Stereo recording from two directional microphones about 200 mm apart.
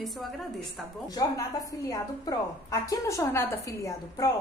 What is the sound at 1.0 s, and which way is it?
A woman's voice, 20° left (ahead or behind).